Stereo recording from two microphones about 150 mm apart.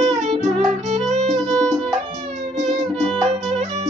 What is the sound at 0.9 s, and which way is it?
Violin, 45° right (ahead or behind).